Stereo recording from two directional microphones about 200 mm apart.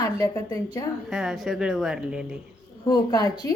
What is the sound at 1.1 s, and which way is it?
Speech, centre (ahead or behind).